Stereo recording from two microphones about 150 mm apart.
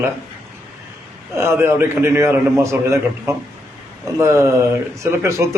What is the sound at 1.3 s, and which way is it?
A man's voice, 15° right (ahead or behind).